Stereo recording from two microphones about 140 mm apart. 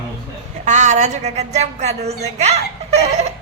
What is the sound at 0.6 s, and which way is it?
A woman's voice, 60° right (ahead or behind).